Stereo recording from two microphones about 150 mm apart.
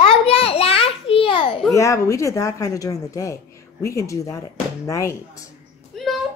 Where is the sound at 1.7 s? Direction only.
20° left (ahead or behind).